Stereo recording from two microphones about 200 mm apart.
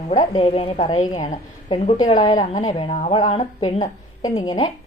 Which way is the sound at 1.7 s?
20° left (ahead or behind).